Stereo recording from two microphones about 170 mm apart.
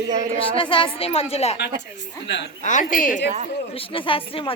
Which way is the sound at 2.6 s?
50° left (ahead or behind).